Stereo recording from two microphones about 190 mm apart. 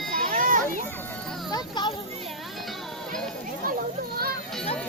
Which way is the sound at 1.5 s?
20° left (ahead or behind).